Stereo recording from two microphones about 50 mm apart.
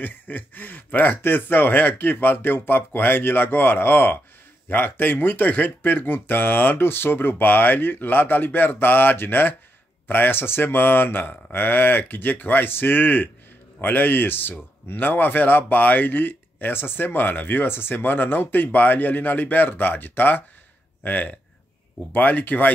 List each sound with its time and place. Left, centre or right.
0.0 s speech: left